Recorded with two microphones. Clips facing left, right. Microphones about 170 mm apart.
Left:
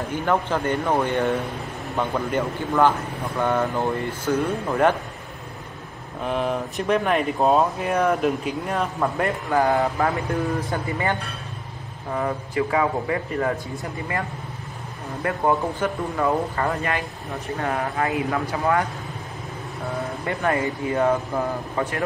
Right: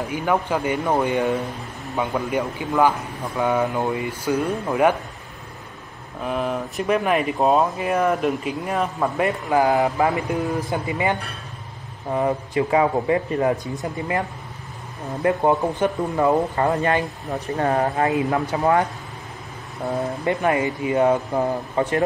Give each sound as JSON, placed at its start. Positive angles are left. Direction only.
{"t": 0.1, "sound": "speech", "side_deg": -10}
{"t": 6.2, "sound": "speech", "side_deg": 0}
{"t": 9.5, "sound": "a man's voice", "side_deg": -15}
{"t": 15.2, "sound": "a man's voice", "side_deg": -20}
{"t": 17.6, "sound": "a man's voice", "side_deg": -35}
{"t": 20.0, "sound": "speech", "side_deg": -15}